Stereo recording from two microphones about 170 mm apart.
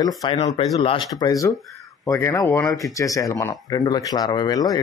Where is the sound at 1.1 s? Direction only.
20° left (ahead or behind).